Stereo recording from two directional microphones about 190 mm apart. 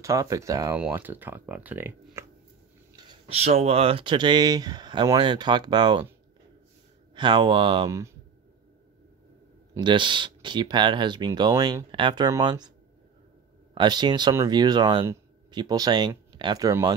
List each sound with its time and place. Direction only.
0.0 s speech: 15° right (ahead or behind)
3.0 s speech: 25° right (ahead or behind)
7.2 s speech: 25° right (ahead or behind)
9.8 s speech: 25° right (ahead or behind)
13.7 s speech: 25° right (ahead or behind)